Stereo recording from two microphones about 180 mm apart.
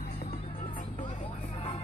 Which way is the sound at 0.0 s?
50° left (ahead or behind).